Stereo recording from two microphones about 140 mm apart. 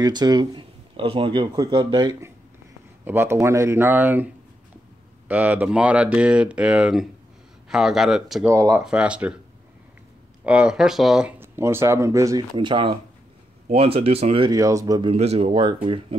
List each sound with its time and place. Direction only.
0.0 s speech: 30° right (ahead or behind); by 4.3 s 15° right (ahead or behind)
5.3 s a man's voice: 10° right (ahead or behind)
8.5 s speech: 20° right (ahead or behind)
8.8 s speech: 5° right (ahead or behind)
10.4 s speech: 5° right (ahead or behind); by 12.4 s 25° right (ahead or behind)
12.5 s speech: 35° right (ahead or behind)
14.5 s speech: 25° right (ahead or behind)
15.0 s speech: 50° right (ahead or behind)